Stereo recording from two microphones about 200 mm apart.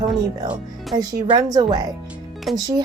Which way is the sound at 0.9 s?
20° right (ahead or behind).